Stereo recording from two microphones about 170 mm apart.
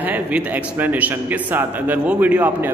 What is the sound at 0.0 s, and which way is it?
A man's voice, 10° right (ahead or behind).